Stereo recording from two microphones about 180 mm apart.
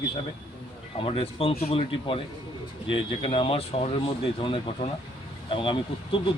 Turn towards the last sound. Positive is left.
turn(degrees=30)  # may be behind; listen again after turning